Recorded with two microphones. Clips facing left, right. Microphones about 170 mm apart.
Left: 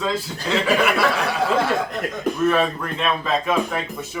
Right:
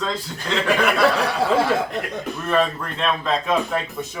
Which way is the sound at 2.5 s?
5° left (ahead or behind).